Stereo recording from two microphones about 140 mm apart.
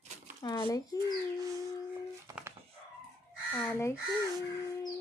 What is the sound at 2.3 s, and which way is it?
Dog, 25° right (ahead or behind).